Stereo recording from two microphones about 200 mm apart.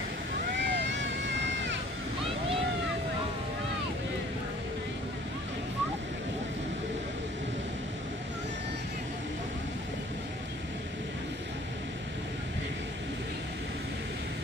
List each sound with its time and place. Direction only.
0.6 s vehicle: 65° right (ahead or behind)